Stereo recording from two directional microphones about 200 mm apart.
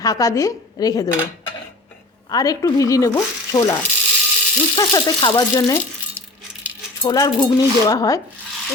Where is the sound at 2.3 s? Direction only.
15° left (ahead or behind).